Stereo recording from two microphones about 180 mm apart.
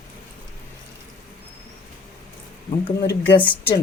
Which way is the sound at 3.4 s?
10° left (ahead or behind).